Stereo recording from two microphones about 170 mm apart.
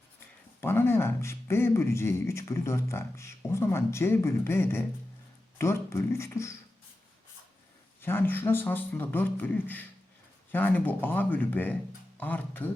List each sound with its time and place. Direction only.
0.6 s speech: 15° left (ahead or behind)
8.0 s speech: 10° left (ahead or behind)